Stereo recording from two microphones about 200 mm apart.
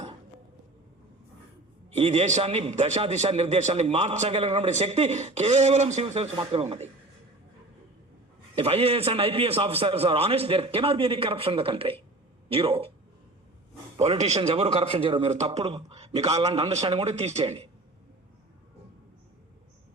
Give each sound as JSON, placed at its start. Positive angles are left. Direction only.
{"t": 2.0, "sound": "a man's voice", "side_deg": -30}
{"t": 8.5, "sound": "a man's voice", "side_deg": -30}
{"t": 13.9, "sound": "a man's voice", "side_deg": -30}